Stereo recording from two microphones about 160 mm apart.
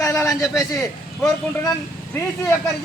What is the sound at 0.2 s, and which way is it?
Speech, 20° left (ahead or behind).